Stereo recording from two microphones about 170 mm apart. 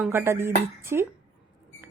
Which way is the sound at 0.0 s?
15° right (ahead or behind).